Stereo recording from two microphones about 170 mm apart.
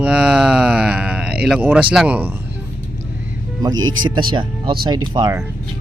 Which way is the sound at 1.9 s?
5° right (ahead or behind).